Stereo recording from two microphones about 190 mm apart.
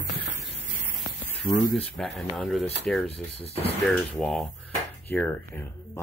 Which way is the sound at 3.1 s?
30° left (ahead or behind).